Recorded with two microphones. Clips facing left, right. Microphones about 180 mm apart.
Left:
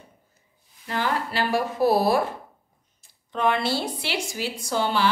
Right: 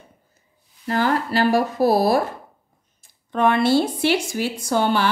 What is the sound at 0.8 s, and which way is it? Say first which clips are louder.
Speech: right 6 dB; 45° right (ahead or behind).